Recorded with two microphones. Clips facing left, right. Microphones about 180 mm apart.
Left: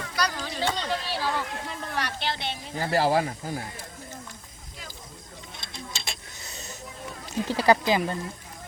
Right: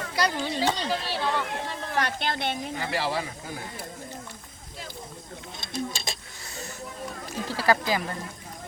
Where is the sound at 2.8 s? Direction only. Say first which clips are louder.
Left 8 dB; 40° left (ahead or behind).